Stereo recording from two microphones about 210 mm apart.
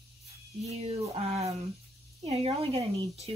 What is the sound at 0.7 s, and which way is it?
Speech, 30° right (ahead or behind).